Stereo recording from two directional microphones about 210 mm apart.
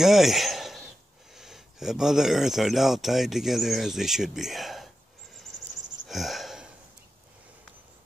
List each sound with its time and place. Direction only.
0.0 s a sound: centre (ahead or behind)
1.3 s speech: centre (ahead or behind)
6.0 s wheeze: centre (ahead or behind)